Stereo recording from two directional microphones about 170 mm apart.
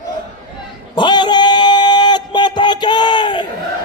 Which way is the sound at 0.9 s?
25° left (ahead or behind).